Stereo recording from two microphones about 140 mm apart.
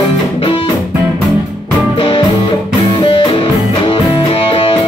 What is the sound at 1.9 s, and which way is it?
Music, 40° left (ahead or behind).